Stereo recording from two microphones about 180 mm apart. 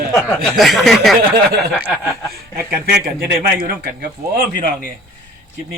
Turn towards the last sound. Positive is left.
turn(degrees=-55)  # may be behind; listen again after turning